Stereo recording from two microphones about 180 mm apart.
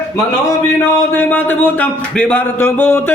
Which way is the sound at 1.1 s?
10° left (ahead or behind).